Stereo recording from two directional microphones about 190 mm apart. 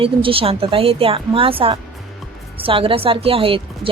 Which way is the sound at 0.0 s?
30° right (ahead or behind).